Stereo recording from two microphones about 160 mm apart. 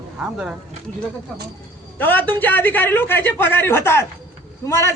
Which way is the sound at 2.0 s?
10° left (ahead or behind).